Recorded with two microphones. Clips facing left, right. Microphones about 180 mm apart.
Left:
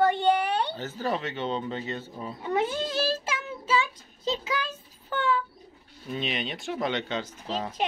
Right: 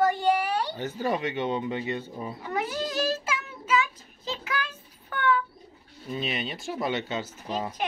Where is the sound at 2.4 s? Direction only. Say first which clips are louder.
Left 4 dB; 25° left (ahead or behind).